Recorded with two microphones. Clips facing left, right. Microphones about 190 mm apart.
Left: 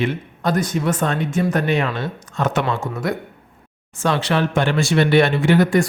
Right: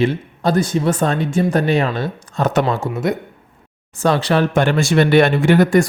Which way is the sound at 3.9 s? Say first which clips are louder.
Right 4 dB; 35° right (ahead or behind).